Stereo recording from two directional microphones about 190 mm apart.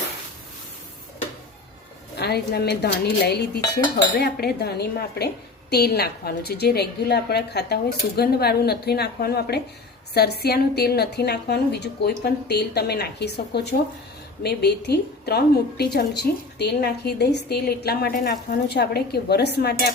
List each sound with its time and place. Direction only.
2.1 s a woman's voice: 60° left (ahead or behind)